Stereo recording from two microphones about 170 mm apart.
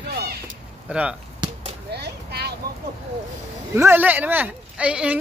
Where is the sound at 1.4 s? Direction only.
25° right (ahead or behind).